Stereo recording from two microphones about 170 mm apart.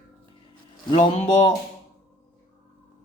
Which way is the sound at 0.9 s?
35° left (ahead or behind).